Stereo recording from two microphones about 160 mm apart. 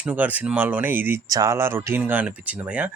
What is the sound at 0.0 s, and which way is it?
Speech, 10° right (ahead or behind).